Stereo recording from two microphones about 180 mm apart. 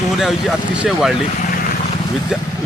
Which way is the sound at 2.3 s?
5° right (ahead or behind).